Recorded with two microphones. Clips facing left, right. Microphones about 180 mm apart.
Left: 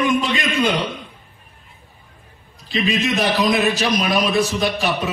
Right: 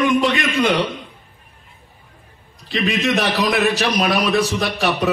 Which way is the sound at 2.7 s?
65° right (ahead or behind).